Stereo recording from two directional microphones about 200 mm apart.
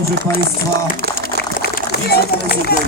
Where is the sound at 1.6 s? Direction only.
55° left (ahead or behind).